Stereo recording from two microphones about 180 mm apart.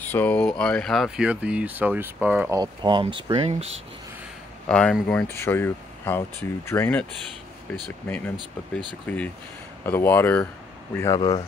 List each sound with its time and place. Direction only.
0.0 s speech: 10° left (ahead or behind); by 2.6 s 10° right (ahead or behind)
2.6 s speech: 25° right (ahead or behind)
4.6 s speech: 5° left (ahead or behind)
8.7 s speech: 10° left (ahead or behind)
11.1 s speech: 25° left (ahead or behind)